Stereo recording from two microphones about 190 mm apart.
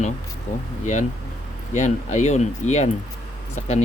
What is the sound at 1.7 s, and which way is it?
Speech, 40° left (ahead or behind).